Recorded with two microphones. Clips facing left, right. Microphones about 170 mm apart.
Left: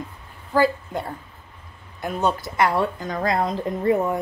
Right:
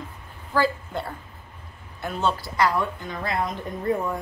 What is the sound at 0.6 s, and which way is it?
Speech, 15° left (ahead or behind).